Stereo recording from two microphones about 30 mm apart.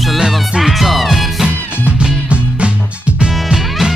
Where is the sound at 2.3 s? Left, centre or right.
Right.